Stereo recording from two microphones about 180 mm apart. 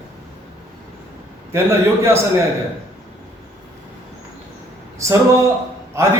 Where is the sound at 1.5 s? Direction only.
15° right (ahead or behind).